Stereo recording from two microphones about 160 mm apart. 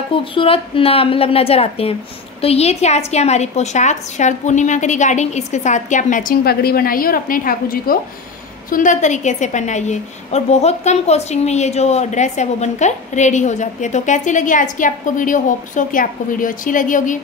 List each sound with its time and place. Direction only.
0.1 s a woman's voice: 35° left (ahead or behind); by 17.2 s 55° left (ahead or behind)